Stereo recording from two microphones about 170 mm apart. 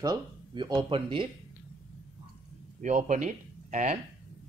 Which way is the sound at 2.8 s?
45° right (ahead or behind).